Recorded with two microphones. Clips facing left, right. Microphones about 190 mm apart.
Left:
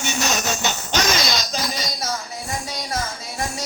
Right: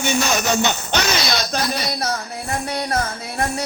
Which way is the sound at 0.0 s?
55° right (ahead or behind).